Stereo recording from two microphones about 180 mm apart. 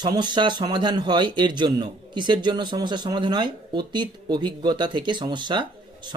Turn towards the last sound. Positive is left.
turn(degrees=-25)  # may be behind; listen again after turning